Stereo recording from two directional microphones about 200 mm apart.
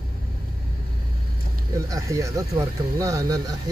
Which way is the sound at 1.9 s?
15° right (ahead or behind).